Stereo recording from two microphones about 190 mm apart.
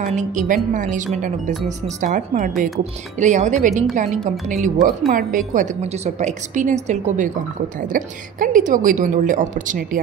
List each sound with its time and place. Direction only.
0.0 s a woman's voice: 40° right (ahead or behind)